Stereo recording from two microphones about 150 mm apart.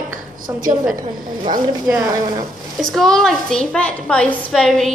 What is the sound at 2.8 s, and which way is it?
A woman's voice, centre (ahead or behind).